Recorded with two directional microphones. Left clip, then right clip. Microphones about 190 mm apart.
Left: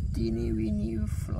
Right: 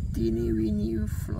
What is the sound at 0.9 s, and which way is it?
Speech, 10° right (ahead or behind).